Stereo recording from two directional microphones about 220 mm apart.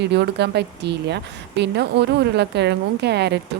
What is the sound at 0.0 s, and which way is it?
Speech, 50° right (ahead or behind).